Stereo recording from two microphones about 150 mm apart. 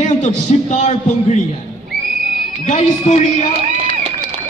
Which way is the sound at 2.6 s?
55° left (ahead or behind).